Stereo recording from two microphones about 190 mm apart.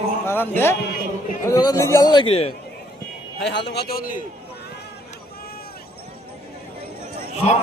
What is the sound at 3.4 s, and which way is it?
Speech, 65° left (ahead or behind).